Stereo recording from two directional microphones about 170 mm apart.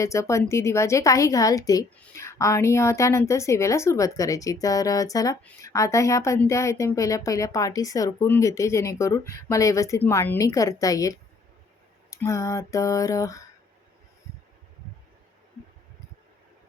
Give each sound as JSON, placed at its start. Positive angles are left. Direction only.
{"t": 0.0, "sound": "a woman's voice", "side_deg": 15}